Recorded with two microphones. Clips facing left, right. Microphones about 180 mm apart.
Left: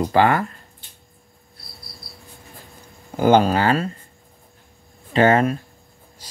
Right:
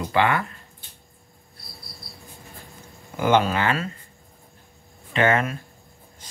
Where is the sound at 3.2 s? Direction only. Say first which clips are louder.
Left 5 dB; 35° left (ahead or behind).